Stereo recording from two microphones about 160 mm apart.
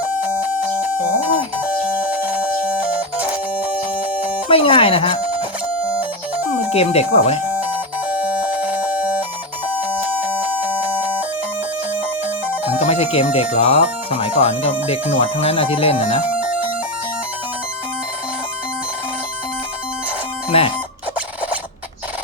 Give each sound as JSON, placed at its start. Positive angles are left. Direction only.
{"t": 0.0, "sound": "music", "side_deg": -10}
{"t": 4.4, "sound": "speech", "side_deg": 35}
{"t": 6.5, "sound": "speech", "side_deg": 40}
{"t": 7.5, "sound": "music", "side_deg": -10}
{"t": 10.7, "sound": "music", "side_deg": -10}
{"t": 12.7, "sound": "speech", "side_deg": 40}
{"t": 20.5, "sound": "speech", "side_deg": 35}